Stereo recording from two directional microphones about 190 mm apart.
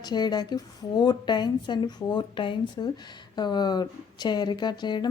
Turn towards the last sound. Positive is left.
turn(degrees=25)  # may be behind; listen again after turning